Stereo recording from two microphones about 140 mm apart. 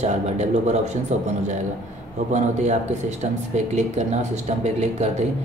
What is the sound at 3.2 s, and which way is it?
Speech, 55° right (ahead or behind).